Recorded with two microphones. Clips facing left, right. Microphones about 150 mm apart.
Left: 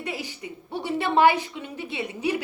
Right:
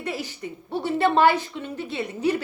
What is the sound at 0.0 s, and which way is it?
A woman's voice, 15° left (ahead or behind).